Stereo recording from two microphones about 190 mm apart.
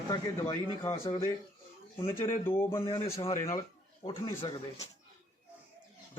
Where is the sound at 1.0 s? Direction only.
25° left (ahead or behind).